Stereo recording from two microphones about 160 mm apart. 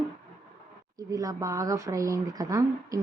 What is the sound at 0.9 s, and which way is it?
Speech, 20° right (ahead or behind).